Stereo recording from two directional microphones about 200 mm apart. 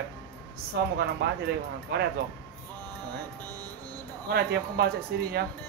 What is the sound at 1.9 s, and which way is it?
Speech, 55° right (ahead or behind).